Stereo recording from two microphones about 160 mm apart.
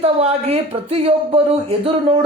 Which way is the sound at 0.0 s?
40° right (ahead or behind).